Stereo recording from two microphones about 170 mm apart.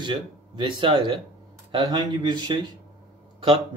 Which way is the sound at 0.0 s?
30° right (ahead or behind).